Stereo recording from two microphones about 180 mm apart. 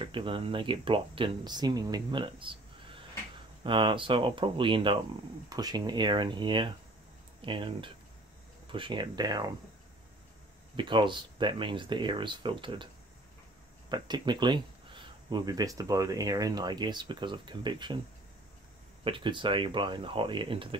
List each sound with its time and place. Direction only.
0.0 s speech: 30° right (ahead or behind)
10.8 s speech: 25° right (ahead or behind)
13.8 s speech: 25° right (ahead or behind)
19.0 s speech: 30° right (ahead or behind)